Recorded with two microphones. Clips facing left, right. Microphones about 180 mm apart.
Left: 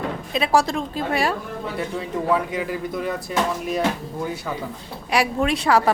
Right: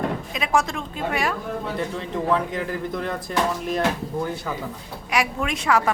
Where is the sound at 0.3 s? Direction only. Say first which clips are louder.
Left 5 dB; 35° left (ahead or behind).